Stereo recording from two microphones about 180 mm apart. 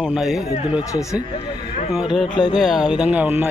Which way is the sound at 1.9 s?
Centre (ahead or behind).